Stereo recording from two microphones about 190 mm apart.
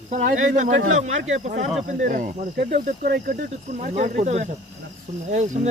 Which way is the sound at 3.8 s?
45° right (ahead or behind).